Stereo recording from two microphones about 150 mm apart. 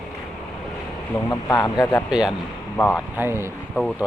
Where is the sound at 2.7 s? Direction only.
15° left (ahead or behind).